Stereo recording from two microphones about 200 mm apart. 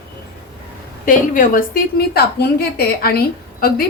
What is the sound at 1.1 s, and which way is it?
Speech, 45° left (ahead or behind).